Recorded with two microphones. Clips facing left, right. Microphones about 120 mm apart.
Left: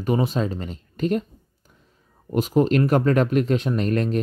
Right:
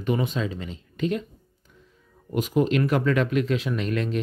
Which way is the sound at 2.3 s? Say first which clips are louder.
Left 3 dB; 40° left (ahead or behind).